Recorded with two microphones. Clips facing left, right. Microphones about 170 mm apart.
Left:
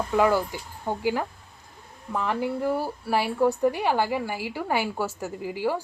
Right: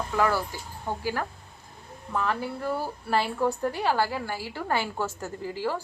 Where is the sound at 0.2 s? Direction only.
15° left (ahead or behind).